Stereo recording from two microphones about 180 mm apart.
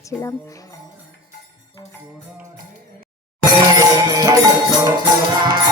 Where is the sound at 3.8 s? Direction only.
20° right (ahead or behind).